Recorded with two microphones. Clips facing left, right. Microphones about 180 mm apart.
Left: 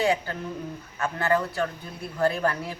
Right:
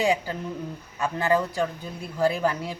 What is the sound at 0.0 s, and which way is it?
A woman's voice, 10° right (ahead or behind).